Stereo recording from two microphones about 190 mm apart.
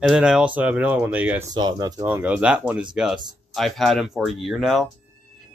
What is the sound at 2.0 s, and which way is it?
Speech, 10° right (ahead or behind).